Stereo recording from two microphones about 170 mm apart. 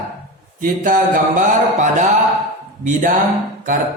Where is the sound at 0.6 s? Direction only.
50° right (ahead or behind).